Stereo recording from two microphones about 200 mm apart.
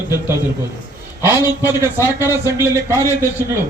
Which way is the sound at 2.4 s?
10° right (ahead or behind).